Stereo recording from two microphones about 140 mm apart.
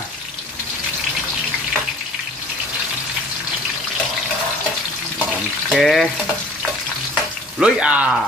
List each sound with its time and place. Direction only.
5.7 s speech: centre (ahead or behind)
7.5 s speech: 5° right (ahead or behind)